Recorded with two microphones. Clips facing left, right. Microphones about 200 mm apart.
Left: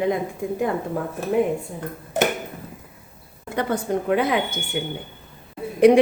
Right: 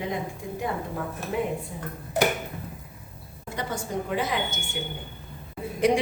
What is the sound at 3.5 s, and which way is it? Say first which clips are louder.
A woman's voice: left 7 dB; 60° left (ahead or behind).